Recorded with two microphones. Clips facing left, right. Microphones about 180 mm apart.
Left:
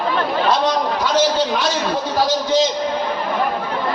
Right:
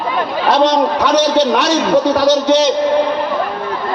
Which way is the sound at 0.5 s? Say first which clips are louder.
Right 6 dB; 75° right (ahead or behind).